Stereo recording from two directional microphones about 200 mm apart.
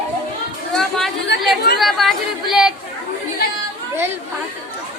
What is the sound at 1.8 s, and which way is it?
Speech, centre (ahead or behind).